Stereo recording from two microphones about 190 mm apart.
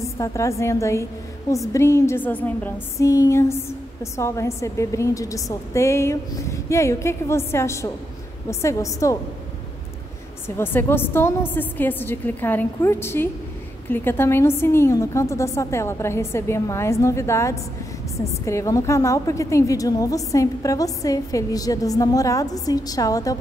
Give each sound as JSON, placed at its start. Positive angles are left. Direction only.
{"t": 0.0, "sound": "a woman's voice", "side_deg": 15}
{"t": 10.6, "sound": "a woman's voice", "side_deg": 10}